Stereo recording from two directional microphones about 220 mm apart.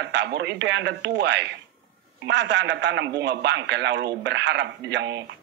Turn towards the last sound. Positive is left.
turn(degrees=-50)  # may be behind; listen again after turning